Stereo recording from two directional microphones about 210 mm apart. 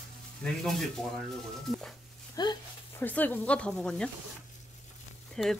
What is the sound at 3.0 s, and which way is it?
Speech, 10° left (ahead or behind).